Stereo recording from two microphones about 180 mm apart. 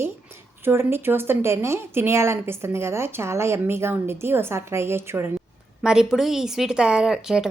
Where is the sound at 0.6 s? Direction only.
15° right (ahead or behind).